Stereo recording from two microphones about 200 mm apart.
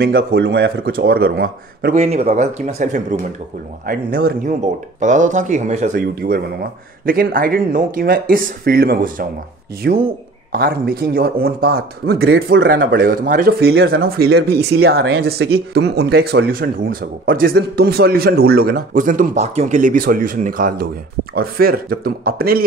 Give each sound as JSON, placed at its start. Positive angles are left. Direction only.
{"t": 0.0, "sound": "speech", "side_deg": -55}
{"t": 2.0, "sound": "speech", "side_deg": -30}
{"t": 3.8, "sound": "speech", "side_deg": -50}
{"t": 5.0, "sound": "speech", "side_deg": -40}